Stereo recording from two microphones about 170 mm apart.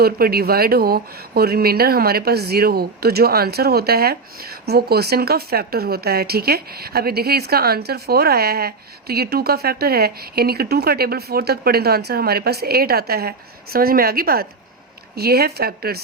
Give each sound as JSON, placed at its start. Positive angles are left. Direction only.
{"t": 0.0, "sound": "speech", "side_deg": -65}